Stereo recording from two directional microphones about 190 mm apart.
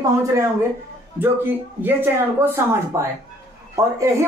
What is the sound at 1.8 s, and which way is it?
A woman's voice, 10° right (ahead or behind).